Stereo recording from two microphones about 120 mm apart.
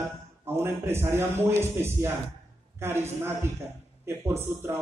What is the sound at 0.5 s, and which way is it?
A man's voice, 20° right (ahead or behind).